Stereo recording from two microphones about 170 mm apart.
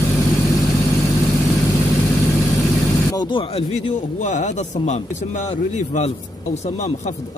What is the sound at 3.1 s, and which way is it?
A man's voice, 25° left (ahead or behind).